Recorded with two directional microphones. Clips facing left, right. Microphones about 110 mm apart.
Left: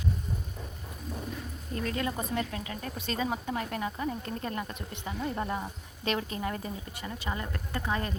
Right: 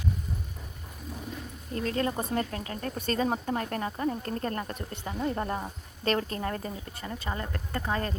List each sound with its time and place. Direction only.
1.7 s a woman's voice: 35° right (ahead or behind)